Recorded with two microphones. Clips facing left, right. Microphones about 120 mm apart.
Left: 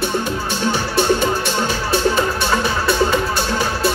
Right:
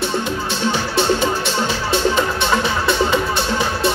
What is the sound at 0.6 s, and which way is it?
Music, 15° right (ahead or behind).